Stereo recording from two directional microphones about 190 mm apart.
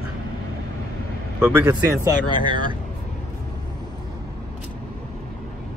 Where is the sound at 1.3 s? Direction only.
10° right (ahead or behind).